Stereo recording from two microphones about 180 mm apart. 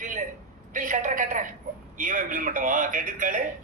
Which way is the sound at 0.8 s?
45° right (ahead or behind).